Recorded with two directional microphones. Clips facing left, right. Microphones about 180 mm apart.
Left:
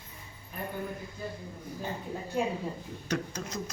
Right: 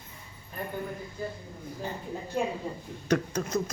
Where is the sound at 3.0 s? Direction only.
55° right (ahead or behind).